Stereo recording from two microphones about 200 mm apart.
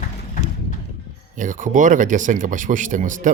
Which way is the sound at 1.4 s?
40° right (ahead or behind).